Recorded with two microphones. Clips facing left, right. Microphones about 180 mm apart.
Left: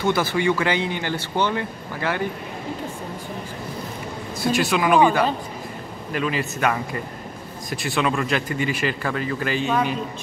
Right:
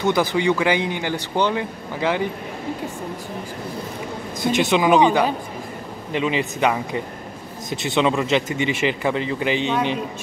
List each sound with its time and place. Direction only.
0.0 s speech: 15° right (ahead or behind)
4.4 s speech: 20° right (ahead or behind)
6.6 s speech: 15° right (ahead or behind)